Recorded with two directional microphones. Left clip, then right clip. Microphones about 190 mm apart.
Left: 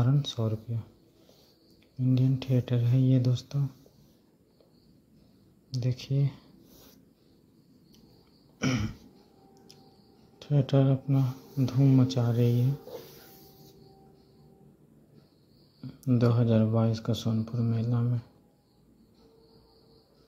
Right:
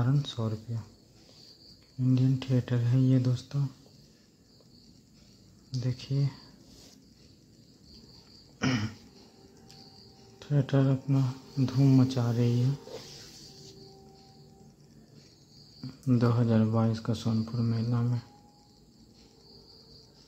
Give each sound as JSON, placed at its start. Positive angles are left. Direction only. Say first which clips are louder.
{"t": 0.0, "sound": "speech", "louder": "left 2 dB", "side_deg": 15}
{"t": 2.0, "sound": "speech", "louder": "even", "side_deg": 15}
{"t": 5.7, "sound": "speech", "louder": "left 2 dB", "side_deg": 20}
{"t": 8.5, "sound": "throat clearing", "louder": "even", "side_deg": 15}
{"t": 10.4, "sound": "speech", "louder": "left 2 dB", "side_deg": 15}
{"t": 16.1, "sound": "speech", "louder": "left 1 dB", "side_deg": 15}